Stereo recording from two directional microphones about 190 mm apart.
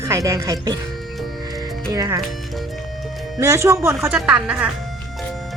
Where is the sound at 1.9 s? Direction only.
20° right (ahead or behind).